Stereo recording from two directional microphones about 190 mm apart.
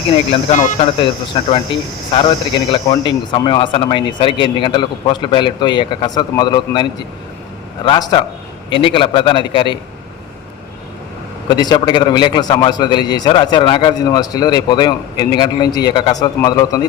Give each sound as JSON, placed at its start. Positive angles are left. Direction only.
{"t": 0.5, "sound": "a man's voice", "side_deg": 30}
{"t": 7.9, "sound": "a man's voice", "side_deg": 20}
{"t": 11.4, "sound": "a man's voice", "side_deg": 20}